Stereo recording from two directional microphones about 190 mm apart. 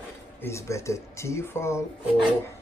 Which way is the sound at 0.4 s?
15° left (ahead or behind).